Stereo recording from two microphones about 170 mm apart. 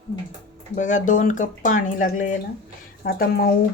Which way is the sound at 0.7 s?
45° left (ahead or behind).